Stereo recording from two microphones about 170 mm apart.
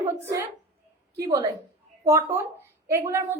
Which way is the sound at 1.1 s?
20° right (ahead or behind).